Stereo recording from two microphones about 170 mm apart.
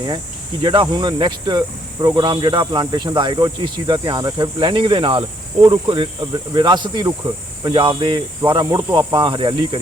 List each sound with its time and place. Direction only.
0.6 s speech: 25° right (ahead or behind)